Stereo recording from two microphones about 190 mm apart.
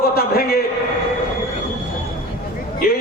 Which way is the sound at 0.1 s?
55° left (ahead or behind).